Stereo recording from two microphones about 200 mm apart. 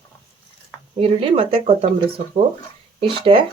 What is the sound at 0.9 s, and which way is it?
Speech, 30° right (ahead or behind).